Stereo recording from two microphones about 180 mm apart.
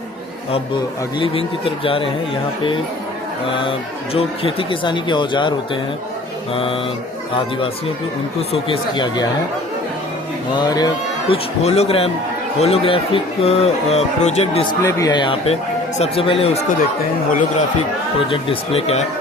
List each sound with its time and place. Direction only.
1.2 s speech: 30° left (ahead or behind)
3.6 s speech: 30° left (ahead or behind)
8.4 s speech: 30° left (ahead or behind)
10.5 s speech: 20° left (ahead or behind)
11.6 s speech: 35° left (ahead or behind)
14.8 s speech: 15° left (ahead or behind); by 16.5 s 35° left (ahead or behind)
18.3 s speech: 30° left (ahead or behind)